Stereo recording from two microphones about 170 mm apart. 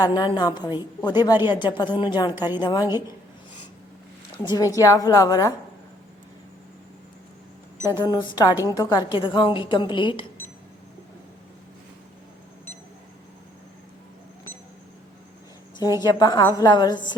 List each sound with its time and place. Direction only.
0.0 s a woman's voice: 25° left (ahead or behind)
4.4 s a woman's voice: 20° left (ahead or behind)
7.8 s a woman's voice: 20° left (ahead or behind)
16.0 s a woman's voice: 20° left (ahead or behind)